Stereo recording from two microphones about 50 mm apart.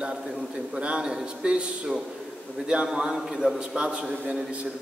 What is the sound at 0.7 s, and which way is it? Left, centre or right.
A man's voice, right.